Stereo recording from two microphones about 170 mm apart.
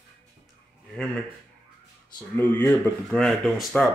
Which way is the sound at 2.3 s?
10° left (ahead or behind).